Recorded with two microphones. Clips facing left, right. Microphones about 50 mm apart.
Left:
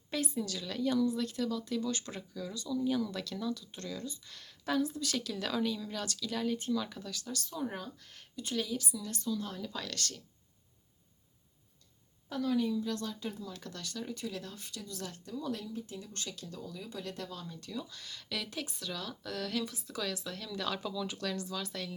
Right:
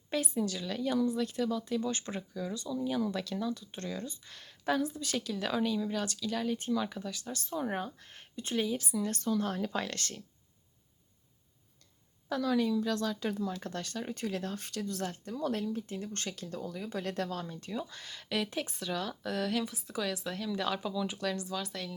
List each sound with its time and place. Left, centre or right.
0.3 s speech: right
0.6 s speech: centre
1.9 s speech: right
3.1 s speech: centre
3.5 s speech: right
9.8 s speech: right
12.3 s a woman's voice: right
13.6 s speech: right
15.2 s speech: right
17.4 s speech: right; by 21.9 s centre